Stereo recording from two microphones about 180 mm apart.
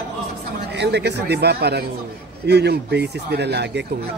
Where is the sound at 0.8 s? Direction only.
70° right (ahead or behind).